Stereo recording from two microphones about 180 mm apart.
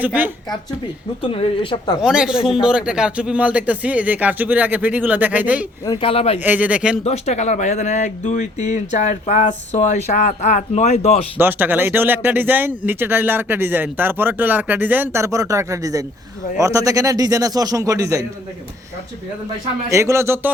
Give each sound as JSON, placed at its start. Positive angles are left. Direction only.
{"t": 0.0, "sound": "speech", "side_deg": -10}
{"t": 1.2, "sound": "a woman's voice", "side_deg": 30}
{"t": 2.0, "sound": "speech", "side_deg": -5}
{"t": 5.8, "sound": "speech", "side_deg": 25}
{"t": 6.4, "sound": "speech", "side_deg": -10}
{"t": 7.0, "sound": "speech", "side_deg": 35}
{"t": 11.3, "sound": "a man's voice", "side_deg": -10}
{"t": 19.9, "sound": "speech", "side_deg": -15}